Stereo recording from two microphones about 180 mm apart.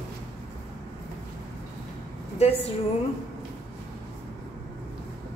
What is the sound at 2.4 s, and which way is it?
Speech, 35° left (ahead or behind).